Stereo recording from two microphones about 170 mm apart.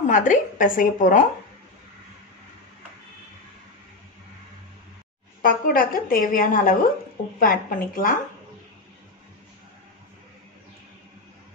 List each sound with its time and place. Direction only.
0.0 s speech: 50° left (ahead or behind)
5.4 s a woman's voice: 55° left (ahead or behind)